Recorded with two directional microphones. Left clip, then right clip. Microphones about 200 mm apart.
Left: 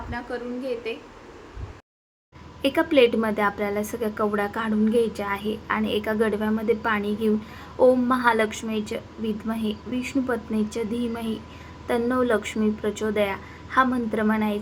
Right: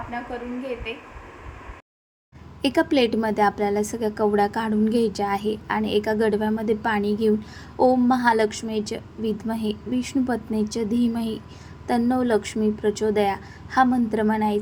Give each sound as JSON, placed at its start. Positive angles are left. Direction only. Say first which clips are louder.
{"t": 0.1, "sound": "a woman's voice", "louder": "left 3 dB", "side_deg": 0}
{"t": 2.6, "sound": "a woman's voice", "louder": "left 2 dB", "side_deg": -30}